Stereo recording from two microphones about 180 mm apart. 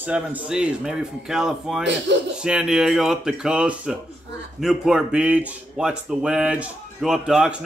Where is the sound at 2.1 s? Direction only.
80° right.